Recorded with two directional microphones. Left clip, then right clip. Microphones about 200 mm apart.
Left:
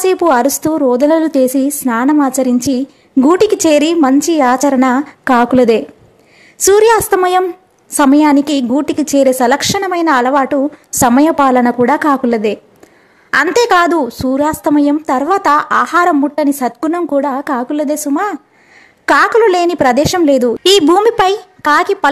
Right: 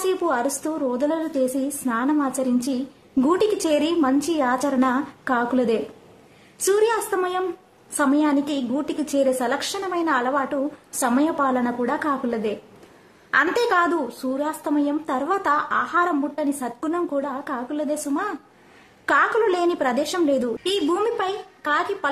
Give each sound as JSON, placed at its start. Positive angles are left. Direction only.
{"t": 0.0, "sound": "a woman's voice", "side_deg": 40}